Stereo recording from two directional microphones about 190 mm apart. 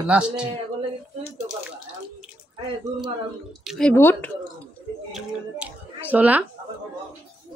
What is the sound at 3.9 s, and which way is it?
Speech, 10° left (ahead or behind).